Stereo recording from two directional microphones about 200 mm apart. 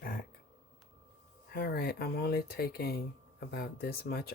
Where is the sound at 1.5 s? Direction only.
50° left (ahead or behind).